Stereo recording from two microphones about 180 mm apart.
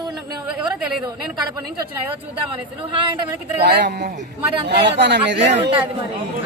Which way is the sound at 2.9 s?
25° right (ahead or behind).